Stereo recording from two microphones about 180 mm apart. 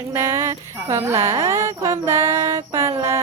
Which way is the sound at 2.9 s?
20° right (ahead or behind).